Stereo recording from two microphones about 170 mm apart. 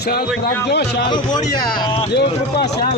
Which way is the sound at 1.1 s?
25° left (ahead or behind).